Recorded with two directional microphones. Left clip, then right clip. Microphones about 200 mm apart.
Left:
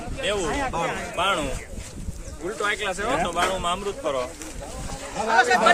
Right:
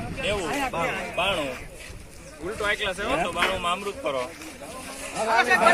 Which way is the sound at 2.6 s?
15° left (ahead or behind).